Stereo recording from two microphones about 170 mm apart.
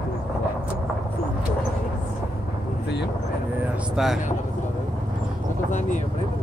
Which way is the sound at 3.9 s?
Centre (ahead or behind).